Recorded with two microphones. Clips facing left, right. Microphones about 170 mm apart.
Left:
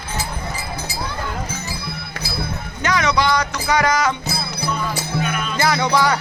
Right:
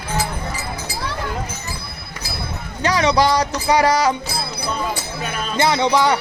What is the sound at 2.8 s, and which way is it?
Speech, 35° right (ahead or behind).